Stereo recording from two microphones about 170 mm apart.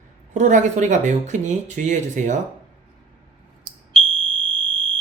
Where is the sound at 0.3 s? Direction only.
45° right (ahead or behind).